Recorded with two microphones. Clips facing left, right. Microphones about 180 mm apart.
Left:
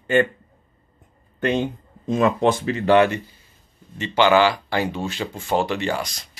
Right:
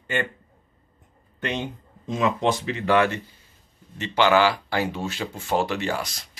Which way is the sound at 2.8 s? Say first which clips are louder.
Left 5 dB; 25° left (ahead or behind).